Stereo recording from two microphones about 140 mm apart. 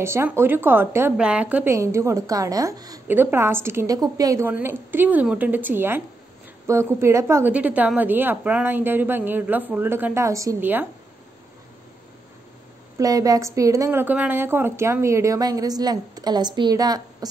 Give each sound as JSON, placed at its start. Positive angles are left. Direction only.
{"t": 0.0, "sound": "a woman's voice", "side_deg": -20}
{"t": 3.1, "sound": "a woman's voice", "side_deg": -15}
{"t": 4.5, "sound": "a woman's voice", "side_deg": -15}
{"t": 12.9, "sound": "a woman's voice", "side_deg": -25}